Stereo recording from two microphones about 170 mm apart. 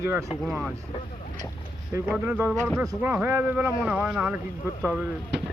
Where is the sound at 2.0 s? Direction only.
10° right (ahead or behind).